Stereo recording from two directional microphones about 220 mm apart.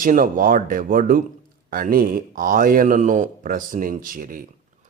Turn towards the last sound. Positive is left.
turn(degrees=-40)  # may be behind; listen again after turning